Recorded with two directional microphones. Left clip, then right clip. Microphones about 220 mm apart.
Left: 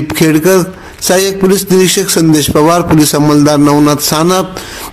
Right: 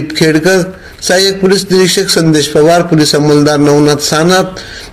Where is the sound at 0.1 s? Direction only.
30° left (ahead or behind).